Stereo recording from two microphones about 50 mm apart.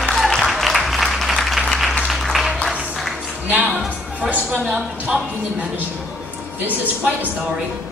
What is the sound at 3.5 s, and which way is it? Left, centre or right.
Music, right.